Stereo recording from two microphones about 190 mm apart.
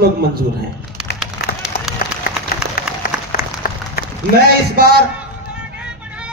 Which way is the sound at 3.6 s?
50° left (ahead or behind).